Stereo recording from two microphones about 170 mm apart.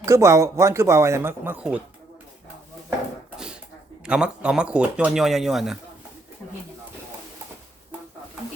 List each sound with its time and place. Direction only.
0.0 s speech: 15° right (ahead or behind)
3.3 s a sound: 5° right (ahead or behind)
4.0 s speech: 5° right (ahead or behind)